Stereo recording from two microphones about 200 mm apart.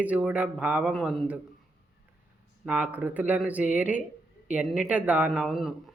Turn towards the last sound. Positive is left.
turn(degrees=0)  # may be behind; listen again after turning